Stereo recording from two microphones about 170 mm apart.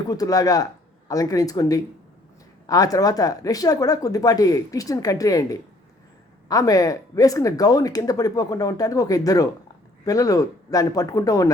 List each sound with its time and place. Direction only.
0.1 s speech: 20° left (ahead or behind)